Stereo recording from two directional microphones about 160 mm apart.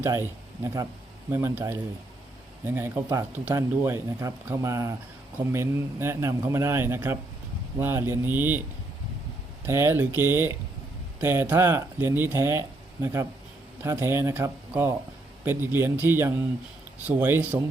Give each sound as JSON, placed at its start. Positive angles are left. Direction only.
{"t": 0.0, "sound": "speech", "side_deg": -15}
{"t": 9.6, "sound": "speech", "side_deg": -15}